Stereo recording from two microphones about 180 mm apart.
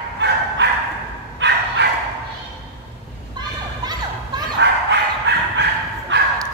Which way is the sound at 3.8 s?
20° right (ahead or behind).